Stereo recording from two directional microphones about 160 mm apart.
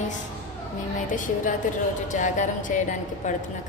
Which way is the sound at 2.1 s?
50° left (ahead or behind).